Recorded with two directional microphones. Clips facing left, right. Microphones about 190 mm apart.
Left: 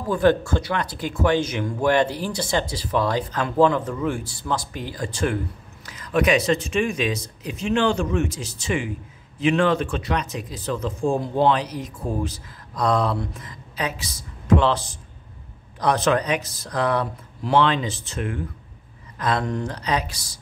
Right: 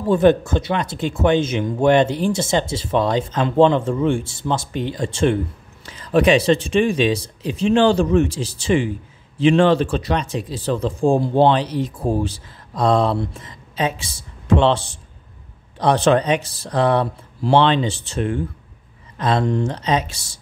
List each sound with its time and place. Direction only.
0.1 s speech: 20° right (ahead or behind)